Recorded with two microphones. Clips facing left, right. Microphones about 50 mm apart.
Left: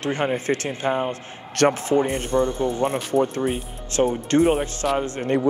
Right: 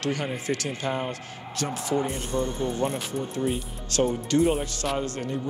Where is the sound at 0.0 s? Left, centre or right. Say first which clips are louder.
Left 5 dB; left.